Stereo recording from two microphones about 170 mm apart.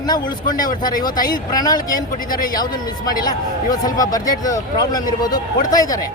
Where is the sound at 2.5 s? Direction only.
25° left (ahead or behind).